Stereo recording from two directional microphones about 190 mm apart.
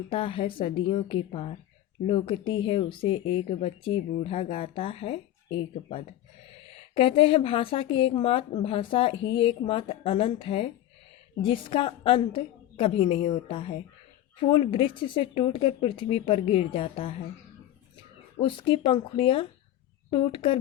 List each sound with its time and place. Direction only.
0.1 s speech: 30° left (ahead or behind)
18.3 s speech: 30° left (ahead or behind)